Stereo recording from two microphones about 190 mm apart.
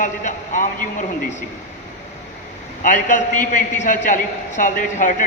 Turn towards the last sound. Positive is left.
turn(degrees=45)  # may be behind; listen again after turning